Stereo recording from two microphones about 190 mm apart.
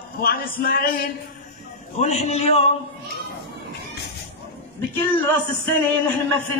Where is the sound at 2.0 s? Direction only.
35° left (ahead or behind).